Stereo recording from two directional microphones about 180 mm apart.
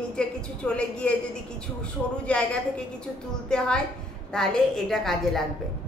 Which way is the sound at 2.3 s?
5° left (ahead or behind).